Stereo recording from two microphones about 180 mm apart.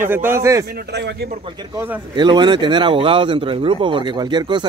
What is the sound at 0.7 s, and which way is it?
Speech, 70° right (ahead or behind).